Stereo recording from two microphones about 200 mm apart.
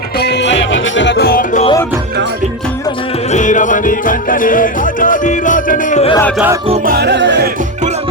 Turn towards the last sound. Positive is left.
turn(degrees=-60)  # may be behind; listen again after turning